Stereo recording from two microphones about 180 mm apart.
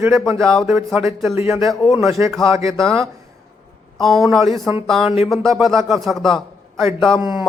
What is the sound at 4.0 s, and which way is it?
Speech, centre (ahead or behind).